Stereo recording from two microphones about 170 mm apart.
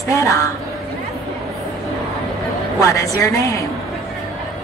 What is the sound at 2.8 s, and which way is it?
Speech, 20° left (ahead or behind).